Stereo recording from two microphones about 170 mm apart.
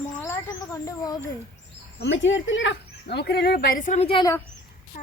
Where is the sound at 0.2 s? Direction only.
15° left (ahead or behind).